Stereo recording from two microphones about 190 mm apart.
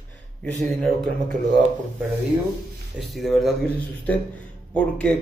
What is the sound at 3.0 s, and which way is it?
Speech, centre (ahead or behind).